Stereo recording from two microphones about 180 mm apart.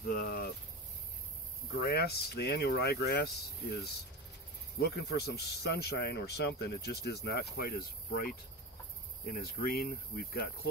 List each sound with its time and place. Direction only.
0.0 s cricket: 55° left (ahead or behind)
1.8 s speech: 60° left (ahead or behind)
4.7 s speech: 65° left (ahead or behind)